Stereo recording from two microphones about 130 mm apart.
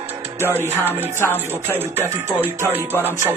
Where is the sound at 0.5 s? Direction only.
15° left (ahead or behind).